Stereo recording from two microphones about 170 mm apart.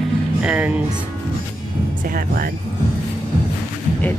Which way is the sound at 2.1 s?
60° right (ahead or behind).